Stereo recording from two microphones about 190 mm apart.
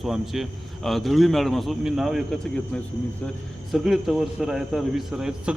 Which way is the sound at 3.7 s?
Centre (ahead or behind).